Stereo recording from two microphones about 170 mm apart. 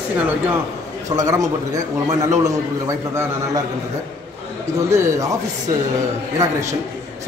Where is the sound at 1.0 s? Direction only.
20° right (ahead or behind).